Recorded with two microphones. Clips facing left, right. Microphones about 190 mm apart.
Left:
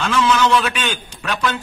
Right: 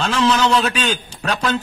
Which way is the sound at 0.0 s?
35° right (ahead or behind).